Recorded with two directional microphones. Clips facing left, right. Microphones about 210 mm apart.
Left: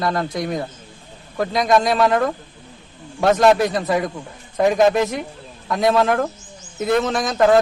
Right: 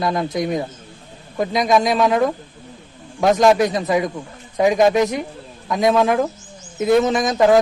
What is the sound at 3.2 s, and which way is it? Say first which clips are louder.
Speech: right 1 dB; centre (ahead or behind).